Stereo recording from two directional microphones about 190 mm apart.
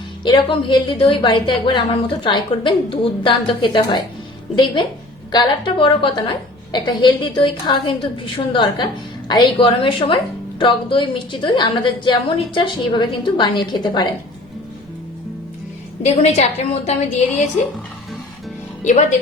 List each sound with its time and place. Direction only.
0.3 s a woman's voice: 25° left (ahead or behind)
16.0 s a woman's voice: 35° left (ahead or behind)
18.8 s speech: 40° left (ahead or behind)